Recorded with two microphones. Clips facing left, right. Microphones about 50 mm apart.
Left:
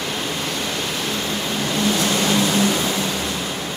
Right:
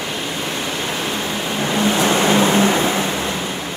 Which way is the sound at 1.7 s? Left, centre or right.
Right.